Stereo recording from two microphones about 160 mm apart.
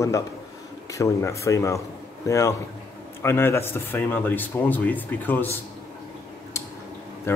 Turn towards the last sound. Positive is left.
turn(degrees=15)  # may be behind; listen again after turning